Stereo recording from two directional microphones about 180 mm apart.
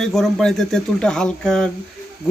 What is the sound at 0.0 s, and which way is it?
Speech, centre (ahead or behind).